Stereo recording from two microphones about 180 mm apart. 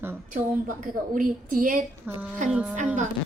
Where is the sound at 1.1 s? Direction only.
50° right (ahead or behind).